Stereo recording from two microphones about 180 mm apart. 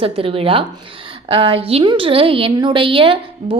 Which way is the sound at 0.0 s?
30° right (ahead or behind).